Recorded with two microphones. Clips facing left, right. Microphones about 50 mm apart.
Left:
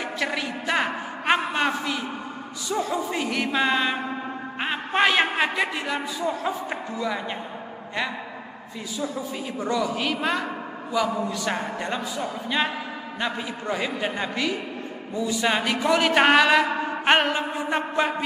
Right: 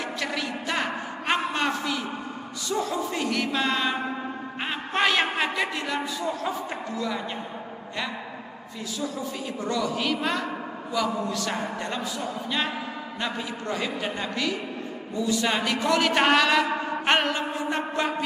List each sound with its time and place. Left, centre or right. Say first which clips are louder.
0.2 s a sound: left 4 dB; centre
2.7 s a man's voice: left 1 dB; centre
4.6 s a sound: left 4 dB; centre
6.7 s a man's voice: left 2 dB; centre
9.6 s a man's voice: left 2 dB; centre
13.2 s a man's voice: left 2 dB; centre